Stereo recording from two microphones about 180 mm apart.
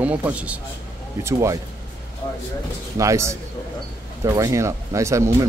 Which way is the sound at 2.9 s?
15° right (ahead or behind).